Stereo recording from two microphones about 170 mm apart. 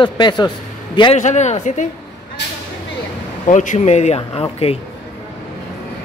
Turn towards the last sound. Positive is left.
turn(degrees=35)  # may be behind; listen again after turning